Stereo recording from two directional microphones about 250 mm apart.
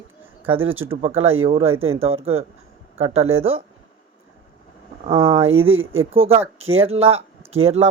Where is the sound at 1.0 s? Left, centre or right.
Right.